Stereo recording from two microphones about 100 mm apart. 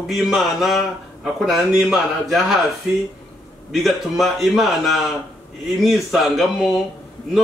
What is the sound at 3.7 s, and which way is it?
A man's voice, centre (ahead or behind).